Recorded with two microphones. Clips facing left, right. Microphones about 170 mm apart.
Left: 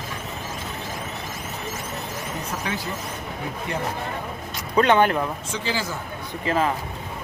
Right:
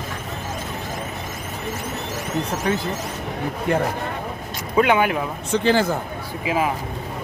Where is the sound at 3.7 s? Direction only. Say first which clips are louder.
Right 9 dB; 50° right (ahead or behind).